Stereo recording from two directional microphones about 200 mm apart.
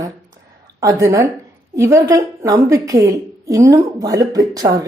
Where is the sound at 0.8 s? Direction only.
15° right (ahead or behind).